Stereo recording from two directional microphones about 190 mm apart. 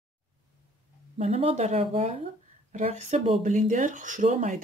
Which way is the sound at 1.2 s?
30° right (ahead or behind).